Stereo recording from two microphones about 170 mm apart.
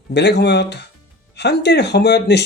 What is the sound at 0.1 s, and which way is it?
Speech, 80° left.